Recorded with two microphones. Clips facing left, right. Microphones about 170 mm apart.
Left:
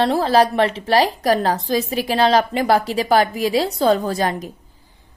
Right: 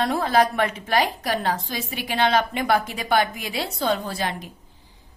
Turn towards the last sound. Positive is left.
turn(degrees=40)  # may be behind; listen again after turning